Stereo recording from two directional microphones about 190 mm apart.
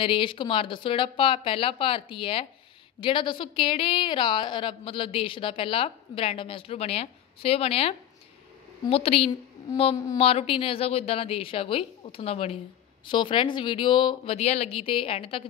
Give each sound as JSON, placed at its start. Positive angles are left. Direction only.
{"t": 0.0, "sound": "a woman's voice", "side_deg": 25}